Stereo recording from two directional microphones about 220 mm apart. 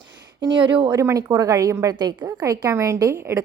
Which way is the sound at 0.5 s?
20° right (ahead or behind).